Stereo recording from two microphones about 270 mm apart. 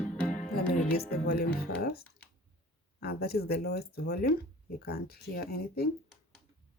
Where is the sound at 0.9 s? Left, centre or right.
Left.